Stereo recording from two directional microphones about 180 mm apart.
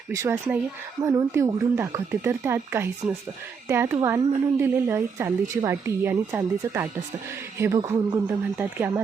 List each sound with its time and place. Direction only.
0.1 s a woman's voice: 15° right (ahead or behind)